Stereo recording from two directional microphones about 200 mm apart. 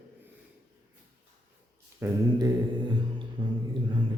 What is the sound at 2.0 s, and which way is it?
Mantra, 10° right (ahead or behind).